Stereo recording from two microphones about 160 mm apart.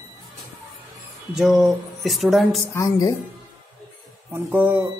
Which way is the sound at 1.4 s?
Centre (ahead or behind).